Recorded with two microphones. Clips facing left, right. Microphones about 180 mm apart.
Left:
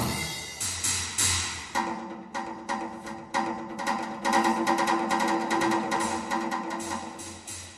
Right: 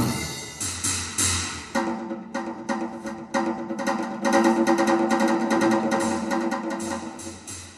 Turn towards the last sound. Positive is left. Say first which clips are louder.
# right 5 dB
turn(degrees=-40)  # may be behind; listen again after turning